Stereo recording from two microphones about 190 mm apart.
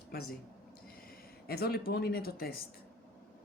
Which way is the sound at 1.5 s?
55° left (ahead or behind).